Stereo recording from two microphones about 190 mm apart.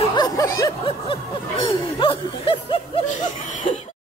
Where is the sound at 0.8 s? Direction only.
30° left (ahead or behind).